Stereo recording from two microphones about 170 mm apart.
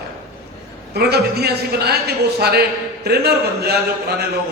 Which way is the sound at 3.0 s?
70° right (ahead or behind).